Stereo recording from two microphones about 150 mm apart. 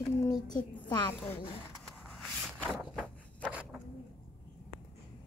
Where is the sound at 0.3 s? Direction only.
30° left (ahead or behind).